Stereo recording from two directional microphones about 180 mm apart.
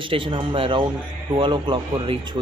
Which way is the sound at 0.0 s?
30° right (ahead or behind).